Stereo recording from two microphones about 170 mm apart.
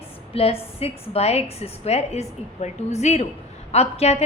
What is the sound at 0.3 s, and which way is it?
A woman's voice, 35° left (ahead or behind).